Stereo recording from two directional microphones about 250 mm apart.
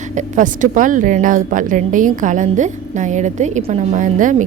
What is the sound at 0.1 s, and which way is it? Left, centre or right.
A woman's voice, right.